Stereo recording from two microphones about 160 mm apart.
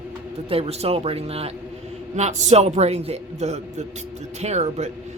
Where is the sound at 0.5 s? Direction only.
40° right (ahead or behind).